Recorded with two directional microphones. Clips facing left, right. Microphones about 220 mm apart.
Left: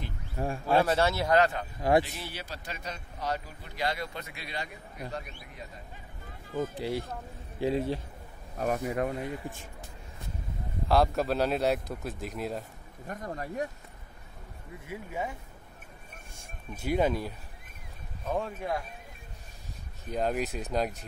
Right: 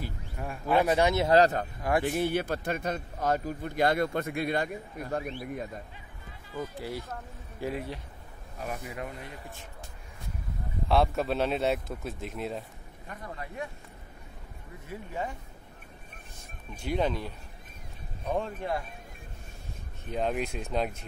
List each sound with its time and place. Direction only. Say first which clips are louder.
0.4 s speech: left 6 dB; 30° left (ahead or behind)
0.7 s speech: right 2 dB; 15° right (ahead or behind)
1.3 s speech: right 3 dB; 40° right (ahead or behind)
1.8 s speech: left 5 dB; 25° left (ahead or behind)
2.0 s a man's voice: right 13 dB; 55° right (ahead or behind)
6.8 s speech: left 4 dB; 25° left (ahead or behind)
8.5 s speech: left 8 dB; 50° left (ahead or behind)
10.9 s a man's voice: left 1 dB; centre (ahead or behind)
13.0 s speech: left 4 dB; 45° left (ahead or behind)
14.9 s speech: even; 10° left (ahead or behind)
16.3 s a man's voice: left 2 dB; 5° left (ahead or behind)
20.1 s a man's voice: even; 5° left (ahead or behind)